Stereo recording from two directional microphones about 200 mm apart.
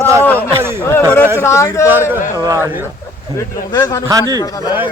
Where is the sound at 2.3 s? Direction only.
15° right (ahead or behind).